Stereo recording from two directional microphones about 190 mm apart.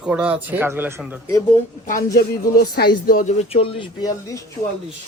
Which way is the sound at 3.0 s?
45° left (ahead or behind).